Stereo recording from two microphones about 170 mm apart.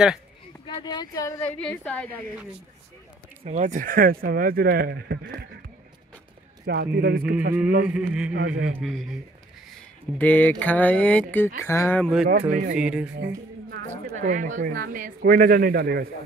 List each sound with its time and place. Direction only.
0.7 s a sound: 25° left (ahead or behind)
1.4 s speech: 5° left (ahead or behind)
3.4 s speech: 45° right (ahead or behind); by 5.4 s 85° right
6.6 s speech: 70° right (ahead or behind)
7.8 s speech: 5° right (ahead or behind)
8.4 s speech: 70° right (ahead or behind)
8.8 s speech: centre (ahead or behind)
10.1 s speech: 10° left (ahead or behind)
12.3 s speech: 50° right (ahead or behind)
12.7 s speech: 5° right (ahead or behind)
14.1 s speech: 50° right (ahead or behind); by 16.1 s 65° right (ahead or behind)